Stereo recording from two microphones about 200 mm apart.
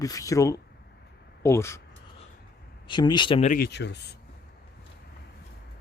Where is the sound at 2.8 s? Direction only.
20° left (ahead or behind).